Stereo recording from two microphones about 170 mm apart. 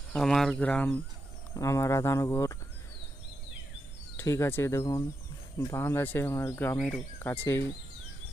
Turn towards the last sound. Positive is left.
turn(degrees=15)  # may be behind; listen again after turning